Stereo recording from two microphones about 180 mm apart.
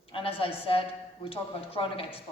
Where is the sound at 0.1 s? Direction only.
30° left (ahead or behind).